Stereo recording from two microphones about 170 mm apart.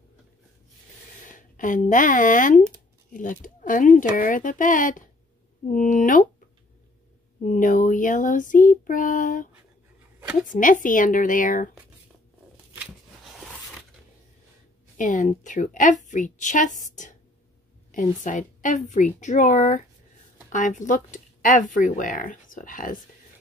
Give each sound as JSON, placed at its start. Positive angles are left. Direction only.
{"t": 1.2, "sound": "speech", "side_deg": 50}
{"t": 7.4, "sound": "speech", "side_deg": 50}
{"t": 15.0, "sound": "speech", "side_deg": 50}